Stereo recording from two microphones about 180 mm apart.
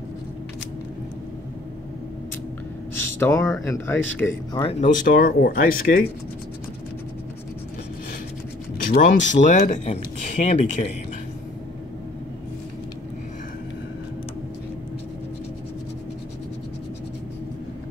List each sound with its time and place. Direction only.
3.2 s speech: 15° left (ahead or behind)
4.6 s speech: 30° left (ahead or behind)
4.8 s speech: 50° left (ahead or behind)
8.7 s speech: 50° left (ahead or behind)